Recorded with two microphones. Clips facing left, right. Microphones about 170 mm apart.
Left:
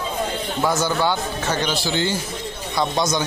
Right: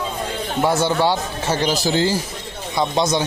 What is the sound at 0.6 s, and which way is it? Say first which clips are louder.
A man's voice: right 3 dB; 30° right (ahead or behind).